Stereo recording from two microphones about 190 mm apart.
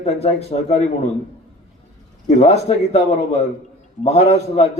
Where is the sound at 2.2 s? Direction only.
35° left (ahead or behind).